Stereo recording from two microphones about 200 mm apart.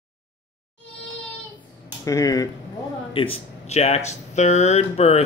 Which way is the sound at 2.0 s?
15° left (ahead or behind).